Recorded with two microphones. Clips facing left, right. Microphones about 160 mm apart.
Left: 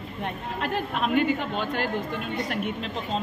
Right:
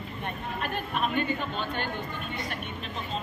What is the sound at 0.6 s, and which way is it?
A woman's voice, 90° left.